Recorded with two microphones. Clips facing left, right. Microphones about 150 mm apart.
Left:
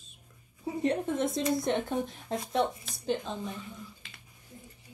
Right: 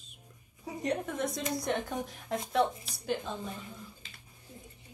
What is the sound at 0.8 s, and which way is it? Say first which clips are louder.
Speech: left 4 dB; 25° left (ahead or behind).